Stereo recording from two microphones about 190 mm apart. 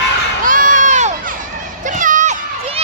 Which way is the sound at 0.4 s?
45° right (ahead or behind).